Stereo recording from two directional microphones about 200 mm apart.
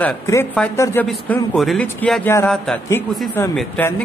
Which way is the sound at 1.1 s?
Centre (ahead or behind).